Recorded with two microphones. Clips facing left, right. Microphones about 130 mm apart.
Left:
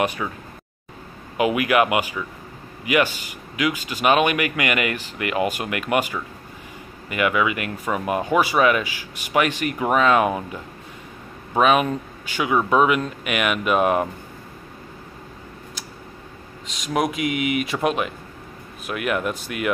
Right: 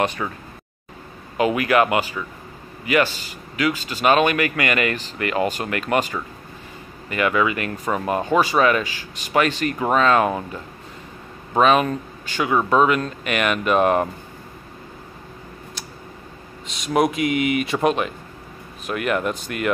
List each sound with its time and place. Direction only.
0.0 s speech: 10° left (ahead or behind)
1.3 s speech: 10° left (ahead or behind)
16.8 s speech: centre (ahead or behind)